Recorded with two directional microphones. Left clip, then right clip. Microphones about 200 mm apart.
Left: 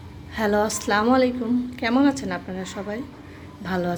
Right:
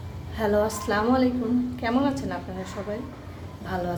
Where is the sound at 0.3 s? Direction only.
45° left (ahead or behind).